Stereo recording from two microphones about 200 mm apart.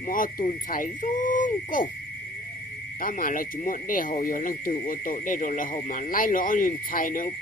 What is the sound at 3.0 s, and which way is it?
Speech, 45° left (ahead or behind).